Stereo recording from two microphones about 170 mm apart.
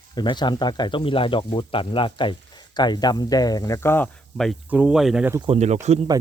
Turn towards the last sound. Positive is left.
turn(degrees=-40)  # may be behind; listen again after turning